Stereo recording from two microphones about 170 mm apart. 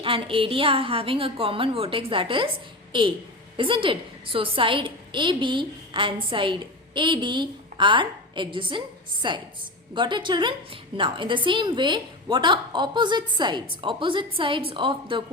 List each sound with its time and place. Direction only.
0.0 s a woman's voice: 30° right (ahead or behind)
3.6 s a woman's voice: 30° right (ahead or behind)